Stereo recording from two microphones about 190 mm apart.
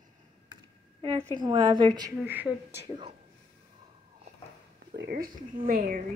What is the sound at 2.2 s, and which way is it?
Speech, 10° right (ahead or behind).